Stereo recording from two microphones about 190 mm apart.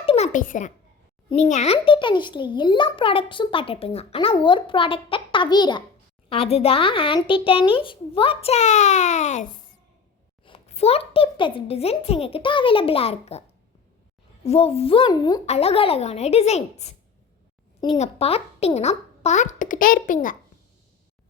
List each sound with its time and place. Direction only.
0.0 s a sound: 30° left (ahead or behind)
0.3 s a child's voice: 40° left (ahead or behind)
14.4 s a child's voice: 30° left (ahead or behind)
15.4 s a child's voice: 35° left (ahead or behind)